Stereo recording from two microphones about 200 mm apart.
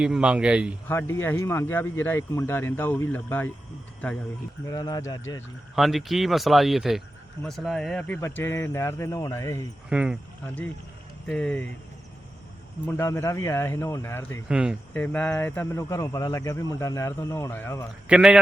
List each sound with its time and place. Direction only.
0.0 s speech: 5° right (ahead or behind)
0.9 s speech: 10° left (ahead or behind)
4.6 s speech: 20° left (ahead or behind)
5.7 s speech: centre (ahead or behind); by 9.6 s 15° left (ahead or behind)
9.9 s speech: 5° right (ahead or behind)
10.4 s speech: 5° left (ahead or behind)
13.0 s speech: 15° left (ahead or behind)
14.4 s speech: 5° right (ahead or behind)
14.9 s speech: 10° left (ahead or behind)
18.1 s speech: 5° right (ahead or behind)